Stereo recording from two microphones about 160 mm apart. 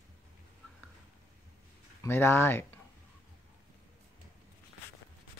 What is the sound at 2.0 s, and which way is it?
Speech, 15° left (ahead or behind).